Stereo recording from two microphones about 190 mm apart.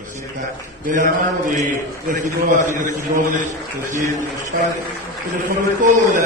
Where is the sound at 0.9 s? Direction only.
45° right (ahead or behind).